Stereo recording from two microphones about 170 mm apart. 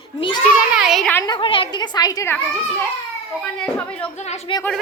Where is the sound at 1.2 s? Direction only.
30° left (ahead or behind).